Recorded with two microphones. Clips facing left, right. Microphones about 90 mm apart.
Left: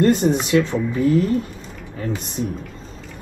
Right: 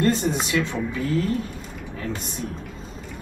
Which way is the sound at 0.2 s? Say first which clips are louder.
Left 6 dB; 45° left (ahead or behind).